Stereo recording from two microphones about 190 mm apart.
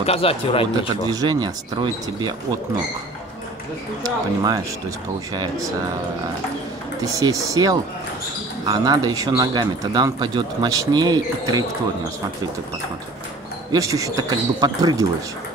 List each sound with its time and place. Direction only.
0.0 s speech: 30° left (ahead or behind)
1.0 s a man's voice: 20° right (ahead or behind)
4.0 s a man's voice: 20° right (ahead or behind)
7.0 s a man's voice: 20° right (ahead or behind)
13.7 s a man's voice: 15° right (ahead or behind)